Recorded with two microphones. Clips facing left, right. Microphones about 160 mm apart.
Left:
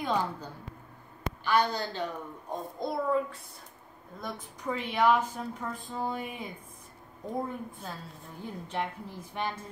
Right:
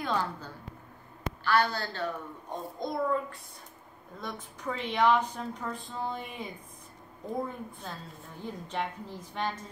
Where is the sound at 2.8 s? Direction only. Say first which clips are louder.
Left 1 dB; 5° left (ahead or behind).